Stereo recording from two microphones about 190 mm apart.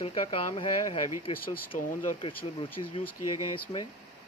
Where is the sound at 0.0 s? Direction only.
30° left (ahead or behind).